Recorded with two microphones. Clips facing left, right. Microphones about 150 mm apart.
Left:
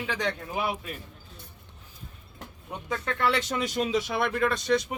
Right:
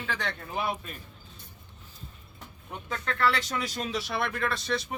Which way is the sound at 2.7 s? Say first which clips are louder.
Left 3 dB; 15° left (ahead or behind).